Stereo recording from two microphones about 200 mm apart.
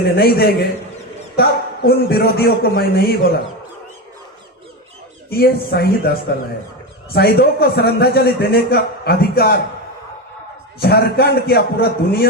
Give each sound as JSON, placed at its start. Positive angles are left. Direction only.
{"t": 0.0, "sound": "a man's voice", "side_deg": 50}
{"t": 5.3, "sound": "a man's voice", "side_deg": 50}
{"t": 10.8, "sound": "a man's voice", "side_deg": 55}